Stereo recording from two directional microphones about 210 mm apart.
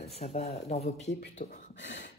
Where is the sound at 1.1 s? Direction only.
50° left (ahead or behind).